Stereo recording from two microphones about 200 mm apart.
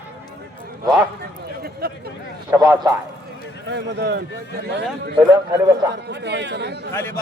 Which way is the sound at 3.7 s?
60° right (ahead or behind).